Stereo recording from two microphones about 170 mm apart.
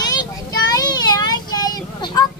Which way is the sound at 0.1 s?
25° left (ahead or behind).